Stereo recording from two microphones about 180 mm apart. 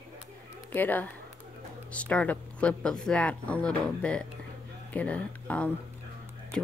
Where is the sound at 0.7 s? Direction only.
10° left (ahead or behind).